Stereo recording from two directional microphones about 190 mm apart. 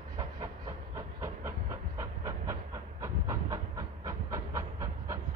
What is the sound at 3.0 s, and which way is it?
Train, 15° right (ahead or behind).